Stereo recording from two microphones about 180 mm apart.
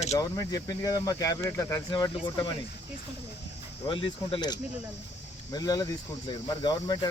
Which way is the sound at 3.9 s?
30° left (ahead or behind).